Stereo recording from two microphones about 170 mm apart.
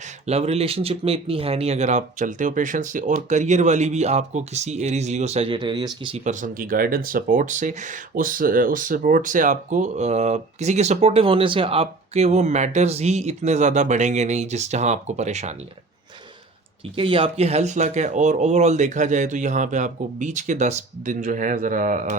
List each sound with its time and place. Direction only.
0.3 s speech: 40° right (ahead or behind)
6.2 s speech: 50° right (ahead or behind)
17.0 s speech: 35° right (ahead or behind); by 22.0 s 50° right (ahead or behind)